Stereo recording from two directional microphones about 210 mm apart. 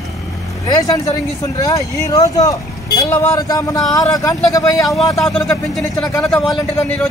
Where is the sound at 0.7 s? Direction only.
15° left (ahead or behind).